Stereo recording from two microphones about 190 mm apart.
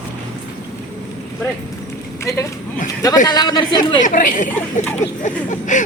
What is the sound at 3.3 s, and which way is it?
Speech, 20° left (ahead or behind).